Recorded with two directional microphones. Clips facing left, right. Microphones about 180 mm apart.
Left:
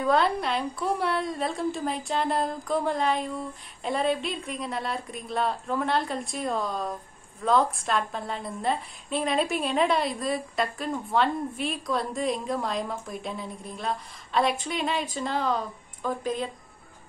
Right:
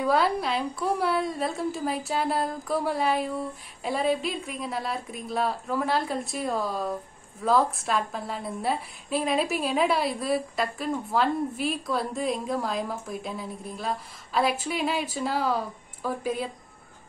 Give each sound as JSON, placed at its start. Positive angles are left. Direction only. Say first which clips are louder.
{"t": 0.0, "sound": "a woman's voice", "louder": "even", "side_deg": -5}